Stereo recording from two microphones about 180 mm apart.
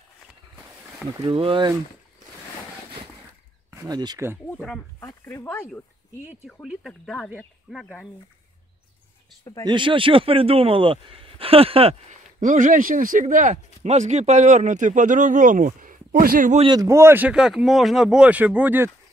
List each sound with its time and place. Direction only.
1.2 s speech: 30° right (ahead or behind)
3.8 s speech: 20° right (ahead or behind)
4.5 s speech: 5° left (ahead or behind)
5.0 s speech: 15° left (ahead or behind); by 8.0 s 5° right (ahead or behind)
9.4 s speech: 20° left (ahead or behind)
9.7 s speech: 25° right (ahead or behind)
12.4 s speech: 45° right (ahead or behind)
16.6 s speech: 20° right (ahead or behind)